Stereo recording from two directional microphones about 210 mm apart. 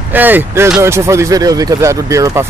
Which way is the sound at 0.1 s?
10° right (ahead or behind).